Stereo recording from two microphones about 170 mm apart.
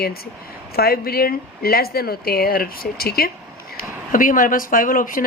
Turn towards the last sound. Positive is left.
turn(degrees=55)  # may be behind; listen again after turning